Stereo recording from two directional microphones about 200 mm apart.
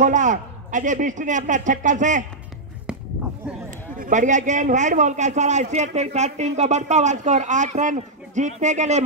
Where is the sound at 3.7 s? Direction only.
40° right (ahead or behind).